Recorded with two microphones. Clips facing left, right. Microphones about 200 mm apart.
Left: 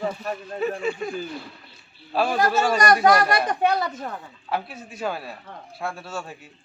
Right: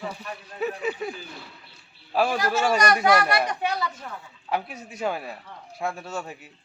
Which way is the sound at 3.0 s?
45° left (ahead or behind).